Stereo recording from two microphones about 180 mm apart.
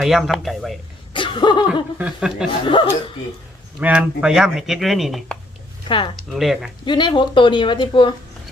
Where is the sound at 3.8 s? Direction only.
5° right (ahead or behind).